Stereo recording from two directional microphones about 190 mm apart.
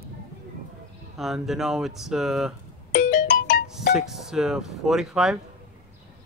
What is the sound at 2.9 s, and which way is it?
Music, 50° left (ahead or behind).